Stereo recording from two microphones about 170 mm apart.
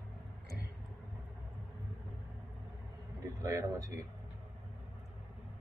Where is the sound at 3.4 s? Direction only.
20° right (ahead or behind).